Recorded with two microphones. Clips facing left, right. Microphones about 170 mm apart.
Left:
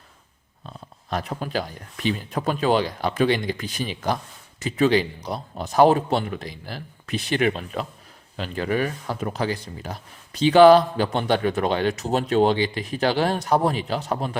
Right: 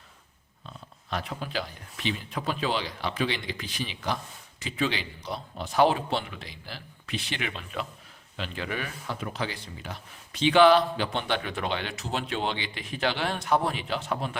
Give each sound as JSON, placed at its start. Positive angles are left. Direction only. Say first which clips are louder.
{"t": 1.1, "sound": "a man's voice", "louder": "left 6 dB", "side_deg": 45}